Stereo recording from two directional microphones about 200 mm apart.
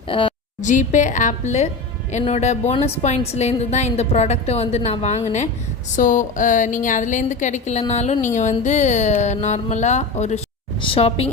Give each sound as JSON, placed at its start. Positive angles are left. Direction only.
{"t": 0.1, "sound": "a woman's voice", "side_deg": 25}
{"t": 0.6, "sound": "a woman's voice", "side_deg": 40}